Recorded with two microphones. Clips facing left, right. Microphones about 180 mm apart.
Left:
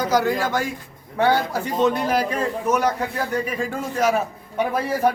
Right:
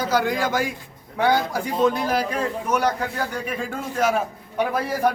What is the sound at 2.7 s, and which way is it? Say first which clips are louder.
A man's voice: even; 5° left (ahead or behind).